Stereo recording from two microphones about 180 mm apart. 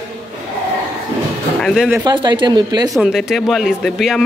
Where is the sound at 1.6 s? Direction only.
Centre (ahead or behind).